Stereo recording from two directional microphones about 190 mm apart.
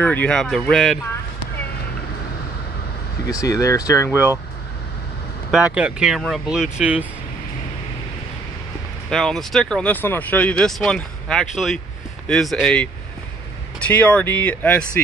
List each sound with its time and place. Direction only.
0.0 s speech: 10° left (ahead or behind)
3.3 s speech: 20° left (ahead or behind)
5.5 s speech: 5° right (ahead or behind)
9.1 s speech: centre (ahead or behind)